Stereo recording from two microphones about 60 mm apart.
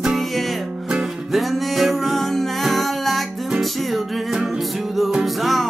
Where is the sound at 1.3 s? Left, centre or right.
Centre.